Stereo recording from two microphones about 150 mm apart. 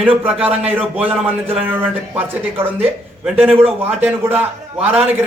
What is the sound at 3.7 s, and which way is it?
A man's voice, 10° right (ahead or behind).